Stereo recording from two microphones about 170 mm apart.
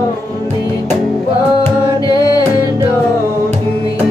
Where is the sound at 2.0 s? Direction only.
20° left (ahead or behind).